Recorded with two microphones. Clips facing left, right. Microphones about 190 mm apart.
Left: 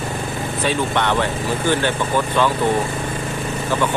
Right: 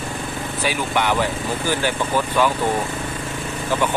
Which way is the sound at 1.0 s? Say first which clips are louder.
Right 2 dB; 10° right (ahead or behind).